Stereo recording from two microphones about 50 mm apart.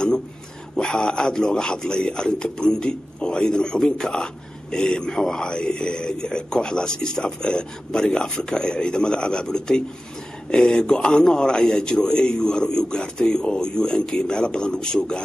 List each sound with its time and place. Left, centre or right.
0.7 s speech: centre